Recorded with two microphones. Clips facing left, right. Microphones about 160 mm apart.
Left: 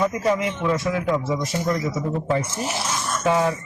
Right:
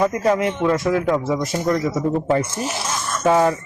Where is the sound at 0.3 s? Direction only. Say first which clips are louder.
Right 4 dB; 45° right (ahead or behind).